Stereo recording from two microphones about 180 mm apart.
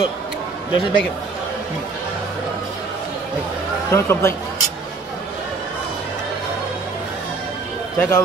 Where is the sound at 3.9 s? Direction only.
15° left (ahead or behind).